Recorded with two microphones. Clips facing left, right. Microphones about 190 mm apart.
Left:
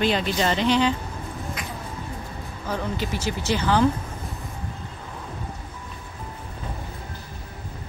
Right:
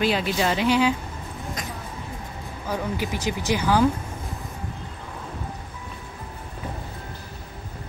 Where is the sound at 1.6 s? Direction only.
40° right (ahead or behind).